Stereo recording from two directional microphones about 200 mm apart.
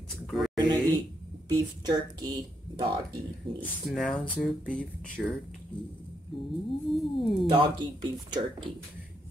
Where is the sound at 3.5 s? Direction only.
25° right (ahead or behind).